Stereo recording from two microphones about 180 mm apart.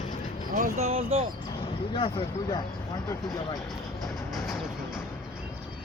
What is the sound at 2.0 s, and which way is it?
Speech, 30° left (ahead or behind).